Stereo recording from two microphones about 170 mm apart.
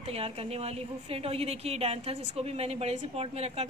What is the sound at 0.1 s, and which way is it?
A woman's voice, 35° right (ahead or behind).